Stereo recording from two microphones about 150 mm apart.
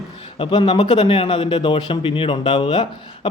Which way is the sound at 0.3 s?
35° left (ahead or behind).